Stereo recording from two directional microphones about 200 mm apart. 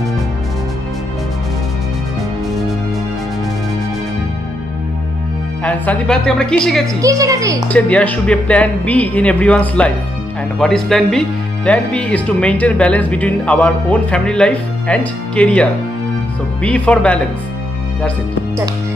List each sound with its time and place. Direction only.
5.6 s speech: 5° left (ahead or behind)
7.0 s a woman's voice: 15° right (ahead or behind)
7.6 s speech: 5° left (ahead or behind)